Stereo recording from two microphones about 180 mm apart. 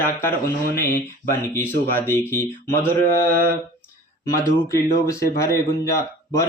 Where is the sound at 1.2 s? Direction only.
10° left (ahead or behind).